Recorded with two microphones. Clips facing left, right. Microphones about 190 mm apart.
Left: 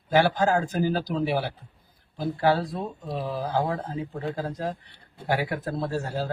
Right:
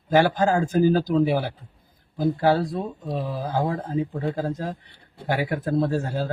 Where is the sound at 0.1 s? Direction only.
50° right (ahead or behind).